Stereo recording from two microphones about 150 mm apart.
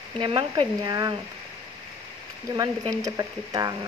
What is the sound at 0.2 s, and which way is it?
Speech, 30° right (ahead or behind).